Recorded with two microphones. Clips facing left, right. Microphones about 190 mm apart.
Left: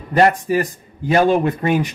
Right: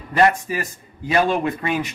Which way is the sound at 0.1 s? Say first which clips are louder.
Left 3 dB; 40° left (ahead or behind).